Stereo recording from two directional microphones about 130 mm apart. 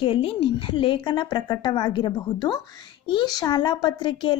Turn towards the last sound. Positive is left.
turn(degrees=35)  # may be behind; listen again after turning